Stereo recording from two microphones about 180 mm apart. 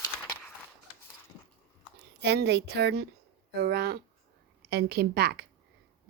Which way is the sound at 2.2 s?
70° right (ahead or behind).